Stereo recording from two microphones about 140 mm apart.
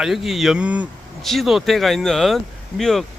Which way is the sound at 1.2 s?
Centre (ahead or behind).